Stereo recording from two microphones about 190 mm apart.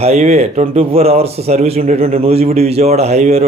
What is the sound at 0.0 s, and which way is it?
A man's voice, 35° right (ahead or behind).